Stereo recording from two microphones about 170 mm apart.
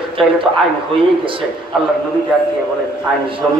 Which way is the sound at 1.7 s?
Centre (ahead or behind).